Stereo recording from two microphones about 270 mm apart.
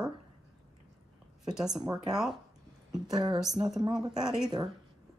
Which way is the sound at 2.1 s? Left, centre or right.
Centre.